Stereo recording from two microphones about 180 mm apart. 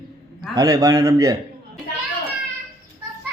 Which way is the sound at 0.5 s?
20° right (ahead or behind).